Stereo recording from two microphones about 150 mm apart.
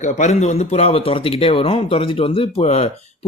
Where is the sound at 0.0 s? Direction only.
50° left (ahead or behind).